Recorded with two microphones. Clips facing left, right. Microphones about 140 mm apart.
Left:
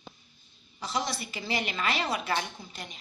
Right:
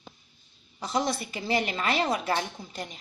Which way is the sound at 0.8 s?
50° right (ahead or behind).